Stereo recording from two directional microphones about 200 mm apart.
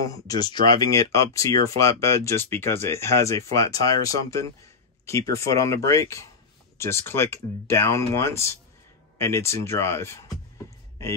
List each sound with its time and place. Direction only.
0.0 s speech: 15° left (ahead or behind)